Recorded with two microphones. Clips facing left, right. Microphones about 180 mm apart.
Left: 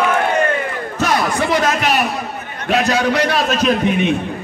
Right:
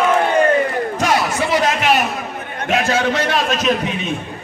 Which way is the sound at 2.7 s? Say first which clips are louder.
Left 2 dB; 40° left (ahead or behind).